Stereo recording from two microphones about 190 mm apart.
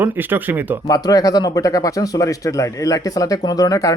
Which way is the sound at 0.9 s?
20° left (ahead or behind).